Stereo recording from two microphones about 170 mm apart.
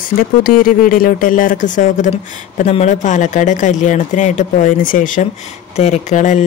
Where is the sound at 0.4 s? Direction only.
55° left (ahead or behind).